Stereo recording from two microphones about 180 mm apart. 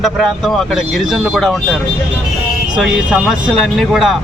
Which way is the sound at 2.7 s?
5° right (ahead or behind).